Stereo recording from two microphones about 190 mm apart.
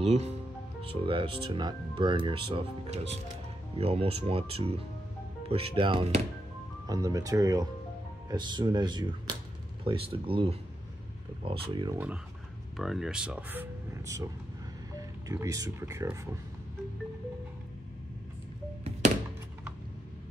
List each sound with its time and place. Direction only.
0.0 s speech: 35° right (ahead or behind)
11.7 s speech: 25° right (ahead or behind)
12.7 s speech: centre (ahead or behind)